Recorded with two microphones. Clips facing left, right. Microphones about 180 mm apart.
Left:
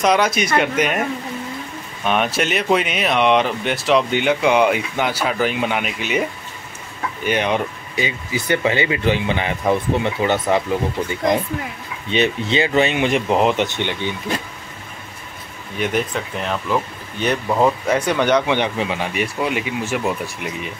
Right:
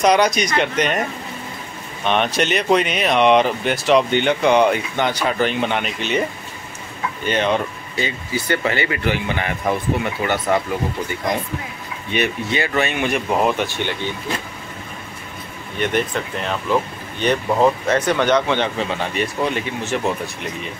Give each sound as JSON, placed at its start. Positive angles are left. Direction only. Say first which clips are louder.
{"t": 0.0, "sound": "speech", "louder": "right 1 dB", "side_deg": 0}
{"t": 2.0, "sound": "speech", "louder": "right 1 dB", "side_deg": 5}
{"t": 7.2, "sound": "speech", "louder": "even", "side_deg": 15}
{"t": 12.1, "sound": "speech", "louder": "left 3 dB", "side_deg": 20}
{"t": 15.8, "sound": "speech", "louder": "right 1 dB", "side_deg": 5}